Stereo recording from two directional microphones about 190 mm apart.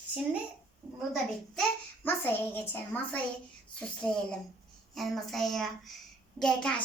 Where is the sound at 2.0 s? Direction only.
10° left (ahead or behind).